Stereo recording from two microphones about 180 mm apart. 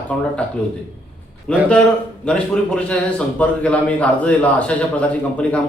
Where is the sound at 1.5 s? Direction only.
5° left (ahead or behind).